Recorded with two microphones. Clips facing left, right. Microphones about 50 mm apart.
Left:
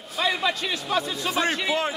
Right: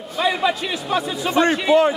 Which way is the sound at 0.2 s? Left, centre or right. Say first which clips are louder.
Right 5 dB; centre.